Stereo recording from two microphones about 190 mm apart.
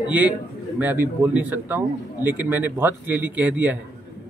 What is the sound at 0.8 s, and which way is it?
Speech, 10° right (ahead or behind).